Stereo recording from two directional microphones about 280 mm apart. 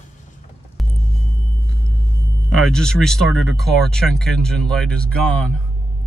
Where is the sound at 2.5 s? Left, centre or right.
Centre.